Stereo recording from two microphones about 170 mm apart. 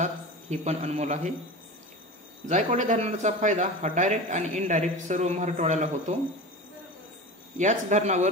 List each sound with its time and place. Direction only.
0.0 s a man's voice: 40° right (ahead or behind)
2.4 s a man's voice: 45° right (ahead or behind)
7.5 s a man's voice: 45° right (ahead or behind)